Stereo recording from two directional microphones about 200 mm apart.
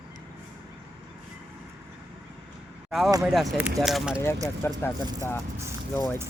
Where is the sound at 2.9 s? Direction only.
Centre (ahead or behind).